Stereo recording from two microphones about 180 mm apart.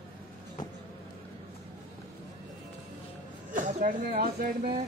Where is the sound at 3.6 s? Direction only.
45° right (ahead or behind).